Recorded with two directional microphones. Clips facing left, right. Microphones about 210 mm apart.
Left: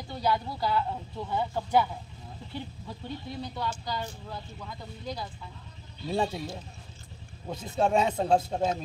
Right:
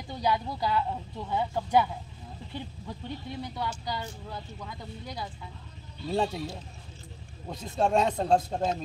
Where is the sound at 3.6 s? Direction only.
15° right (ahead or behind).